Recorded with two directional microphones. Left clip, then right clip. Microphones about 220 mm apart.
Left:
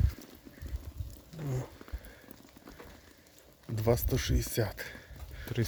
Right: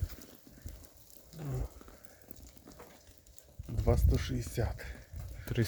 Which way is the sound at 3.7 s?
50° left (ahead or behind).